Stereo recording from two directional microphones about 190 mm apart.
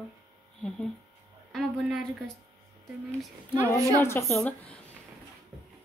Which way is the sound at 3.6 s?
15° right (ahead or behind).